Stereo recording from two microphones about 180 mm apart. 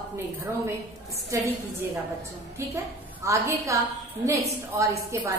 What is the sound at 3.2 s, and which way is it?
Speech, 15° right (ahead or behind).